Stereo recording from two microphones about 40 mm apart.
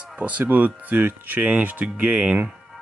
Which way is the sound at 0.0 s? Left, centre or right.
Right.